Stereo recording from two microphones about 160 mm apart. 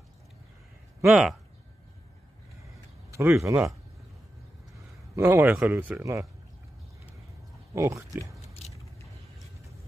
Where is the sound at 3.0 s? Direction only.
20° right (ahead or behind).